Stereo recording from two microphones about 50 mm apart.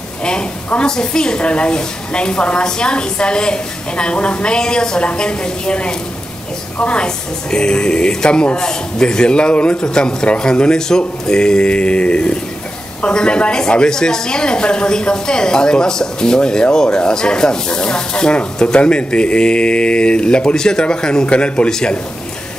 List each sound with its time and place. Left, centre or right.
0.2 s a woman's voice: centre